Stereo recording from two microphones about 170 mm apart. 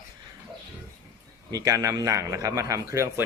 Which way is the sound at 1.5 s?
20° right (ahead or behind).